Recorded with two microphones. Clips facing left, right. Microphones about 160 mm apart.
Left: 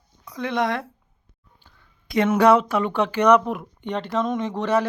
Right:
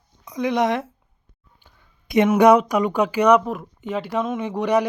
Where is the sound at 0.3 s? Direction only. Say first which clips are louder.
Right 3 dB; 20° right (ahead or behind).